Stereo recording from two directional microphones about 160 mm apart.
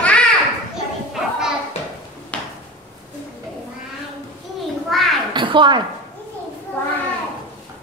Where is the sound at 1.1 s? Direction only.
5° right (ahead or behind).